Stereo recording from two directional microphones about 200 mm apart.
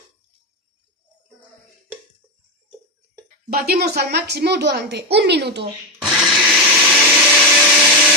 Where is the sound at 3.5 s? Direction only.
50° right (ahead or behind).